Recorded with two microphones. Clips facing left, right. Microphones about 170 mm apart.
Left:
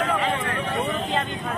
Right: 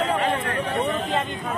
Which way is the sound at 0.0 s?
30° right (ahead or behind).